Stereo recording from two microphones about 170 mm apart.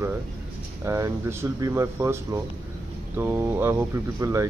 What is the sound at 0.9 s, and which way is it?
Speech, 15° right (ahead or behind).